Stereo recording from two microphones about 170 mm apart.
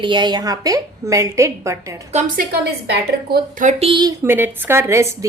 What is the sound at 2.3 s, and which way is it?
A woman's voice, 65° right (ahead or behind).